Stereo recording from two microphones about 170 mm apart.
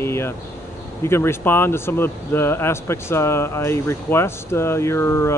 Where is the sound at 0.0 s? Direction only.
15° left (ahead or behind).